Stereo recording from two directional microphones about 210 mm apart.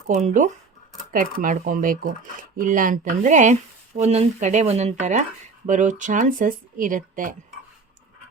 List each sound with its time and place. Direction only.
0.1 s speech: 35° right (ahead or behind)